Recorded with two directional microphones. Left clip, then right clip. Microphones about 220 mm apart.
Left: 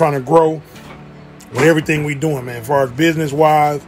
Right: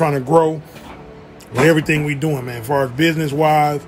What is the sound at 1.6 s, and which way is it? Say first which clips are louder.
A man's voice: left 1 dB; 10° right (ahead or behind).